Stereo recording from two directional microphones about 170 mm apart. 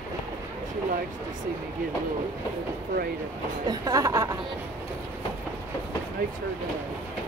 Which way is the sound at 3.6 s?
20° right (ahead or behind).